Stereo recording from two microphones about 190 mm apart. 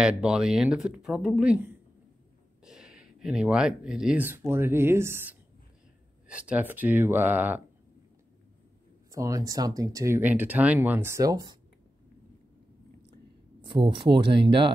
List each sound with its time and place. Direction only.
0.0 s speech: 5° right (ahead or behind)
9.1 s speech: 15° right (ahead or behind)
13.6 s speech: 25° right (ahead or behind)